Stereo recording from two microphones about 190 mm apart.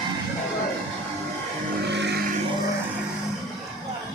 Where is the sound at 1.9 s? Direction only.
65° right (ahead or behind).